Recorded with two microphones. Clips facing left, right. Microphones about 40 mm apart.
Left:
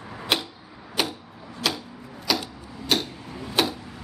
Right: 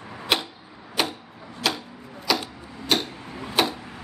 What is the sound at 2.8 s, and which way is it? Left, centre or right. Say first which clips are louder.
Tick-tock: right 1 dB; centre.